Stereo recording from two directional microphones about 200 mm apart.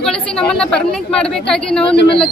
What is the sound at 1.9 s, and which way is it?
Speech, 55° left (ahead or behind).